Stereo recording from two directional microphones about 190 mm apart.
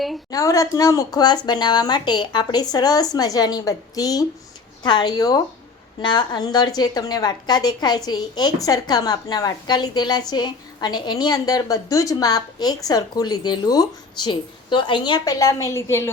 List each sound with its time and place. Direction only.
0.3 s a woman's voice: 20° left (ahead or behind)